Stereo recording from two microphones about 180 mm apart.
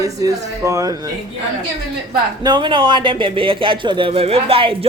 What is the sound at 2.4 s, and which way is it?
Speech, 25° right (ahead or behind).